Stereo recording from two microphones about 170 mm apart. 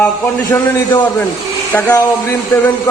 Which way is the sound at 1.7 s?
10° left (ahead or behind).